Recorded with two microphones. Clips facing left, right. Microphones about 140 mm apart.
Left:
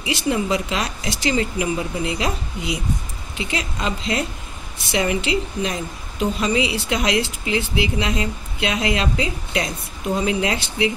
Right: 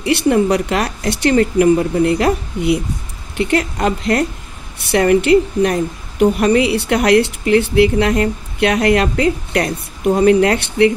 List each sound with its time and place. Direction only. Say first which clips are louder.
0.0 s speech: right 8 dB; 60° right (ahead or behind)